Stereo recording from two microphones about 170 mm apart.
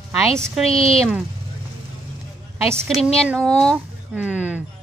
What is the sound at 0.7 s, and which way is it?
Speech, 35° left (ahead or behind).